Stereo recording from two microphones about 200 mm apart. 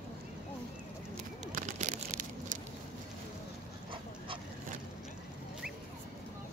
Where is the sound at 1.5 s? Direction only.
35° right (ahead or behind).